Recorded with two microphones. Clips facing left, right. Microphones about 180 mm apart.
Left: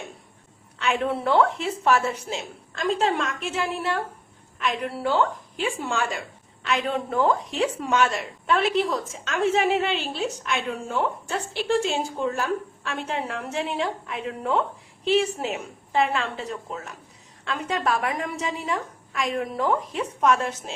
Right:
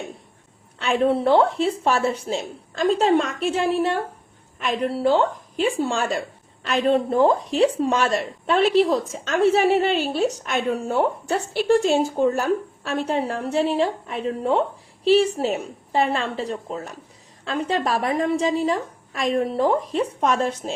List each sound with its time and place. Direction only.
0.8 s a woman's voice: 35° right (ahead or behind)
4.7 s a woman's voice: 35° right (ahead or behind)